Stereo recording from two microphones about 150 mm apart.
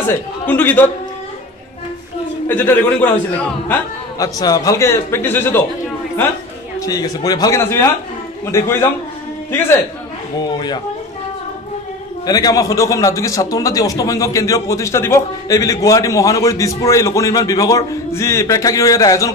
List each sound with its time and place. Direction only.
0.1 s a man's voice: 10° left (ahead or behind)
2.4 s a man's voice: 15° left (ahead or behind)
4.2 s a man's voice: 25° left (ahead or behind)
6.8 s a man's voice: 25° left (ahead or behind)
10.4 s a man's voice: 30° left (ahead or behind)
12.3 s a man's voice: 25° left (ahead or behind)